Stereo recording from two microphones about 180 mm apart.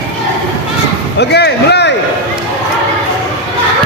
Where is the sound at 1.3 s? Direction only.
65° left (ahead or behind).